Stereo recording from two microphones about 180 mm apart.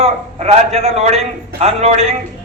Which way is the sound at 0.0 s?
35° right (ahead or behind).